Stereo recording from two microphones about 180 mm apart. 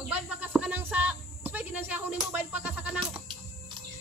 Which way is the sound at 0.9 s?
10° right (ahead or behind).